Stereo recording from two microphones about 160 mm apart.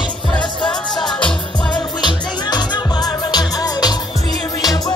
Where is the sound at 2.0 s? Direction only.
25° left (ahead or behind).